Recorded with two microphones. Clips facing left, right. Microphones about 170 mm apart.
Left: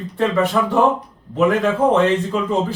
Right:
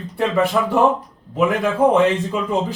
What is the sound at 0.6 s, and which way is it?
Speech, 10° right (ahead or behind).